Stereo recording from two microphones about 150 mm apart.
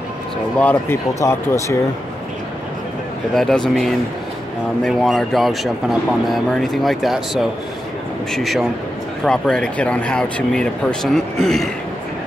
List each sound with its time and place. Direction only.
0.6 s speech: 10° left (ahead or behind)
3.3 s speech: 5° left (ahead or behind)